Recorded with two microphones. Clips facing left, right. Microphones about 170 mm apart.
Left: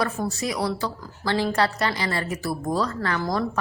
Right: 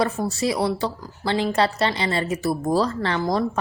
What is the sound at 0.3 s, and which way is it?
A woman's voice, 30° right (ahead or behind).